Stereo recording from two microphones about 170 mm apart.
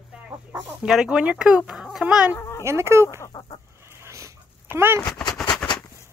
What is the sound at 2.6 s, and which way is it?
Speech, 15° right (ahead or behind).